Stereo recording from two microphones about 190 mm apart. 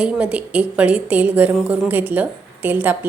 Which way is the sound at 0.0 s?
5° right (ahead or behind).